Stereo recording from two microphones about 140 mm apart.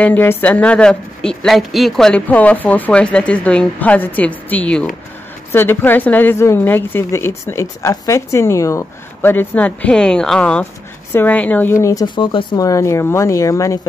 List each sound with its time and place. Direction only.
0.0 s a woman's voice: 15° left (ahead or behind); by 12.6 s 35° left (ahead or behind)
12.6 s speech: 20° left (ahead or behind)